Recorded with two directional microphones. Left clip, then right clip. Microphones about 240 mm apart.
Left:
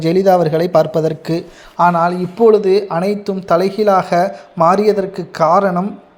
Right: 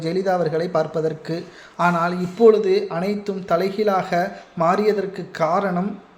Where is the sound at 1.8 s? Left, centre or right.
Centre.